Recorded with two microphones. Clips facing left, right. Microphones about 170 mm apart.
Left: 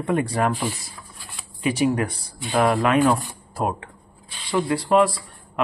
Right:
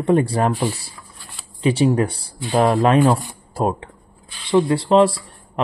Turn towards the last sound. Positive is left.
turn(degrees=-30)  # may be behind; listen again after turning